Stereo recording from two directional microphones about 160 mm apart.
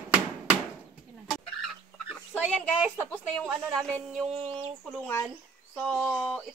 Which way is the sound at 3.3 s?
5° left (ahead or behind).